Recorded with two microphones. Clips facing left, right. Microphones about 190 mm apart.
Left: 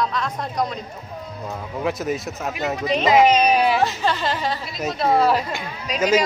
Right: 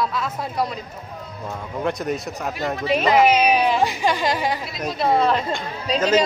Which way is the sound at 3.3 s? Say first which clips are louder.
Left 1 dB; 10° right (ahead or behind).